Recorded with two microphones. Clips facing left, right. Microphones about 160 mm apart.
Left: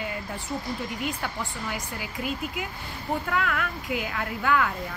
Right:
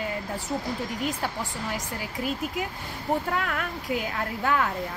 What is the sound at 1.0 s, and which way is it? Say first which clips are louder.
Speech: right 2 dB; 35° right (ahead or behind).